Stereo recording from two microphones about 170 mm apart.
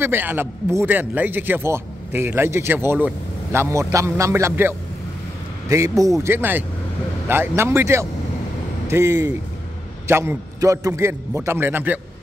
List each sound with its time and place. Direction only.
0.0 s speech: 10° right (ahead or behind)